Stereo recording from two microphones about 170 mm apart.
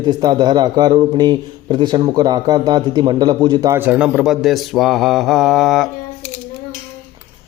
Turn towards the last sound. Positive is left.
turn(degrees=0)  # may be behind; listen again after turning